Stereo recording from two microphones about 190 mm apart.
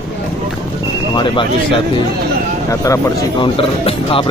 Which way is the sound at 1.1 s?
25° left (ahead or behind).